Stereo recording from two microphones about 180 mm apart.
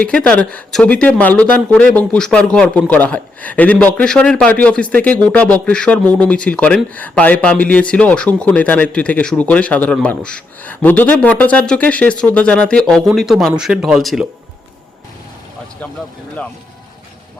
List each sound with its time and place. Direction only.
0.0 s speech: 5° left (ahead or behind)